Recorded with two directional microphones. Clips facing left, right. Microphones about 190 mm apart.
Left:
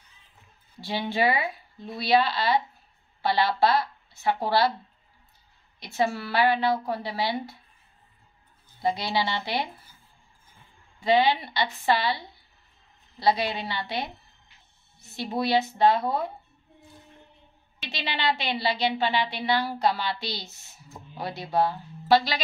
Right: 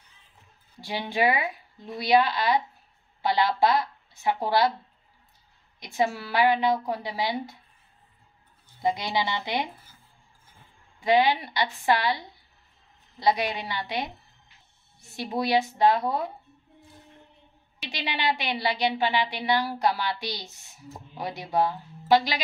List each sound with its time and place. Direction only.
0.7 s a woman's voice: 15° right (ahead or behind)
5.8 s a woman's voice: 15° right (ahead or behind)
8.8 s a woman's voice: 20° right (ahead or behind)
11.0 s a woman's voice: 15° right (ahead or behind)
17.7 s a woman's voice: 15° right (ahead or behind)